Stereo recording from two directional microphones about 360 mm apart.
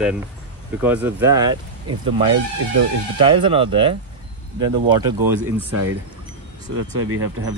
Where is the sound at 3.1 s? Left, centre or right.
Centre.